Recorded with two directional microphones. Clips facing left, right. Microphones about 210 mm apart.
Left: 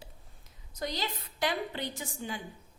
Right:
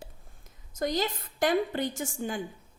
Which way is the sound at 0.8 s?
50° right (ahead or behind).